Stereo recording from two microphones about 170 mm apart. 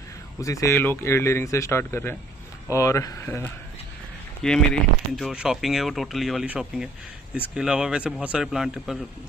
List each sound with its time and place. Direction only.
0.4 s speech: 20° left (ahead or behind); by 9.0 s centre (ahead or behind)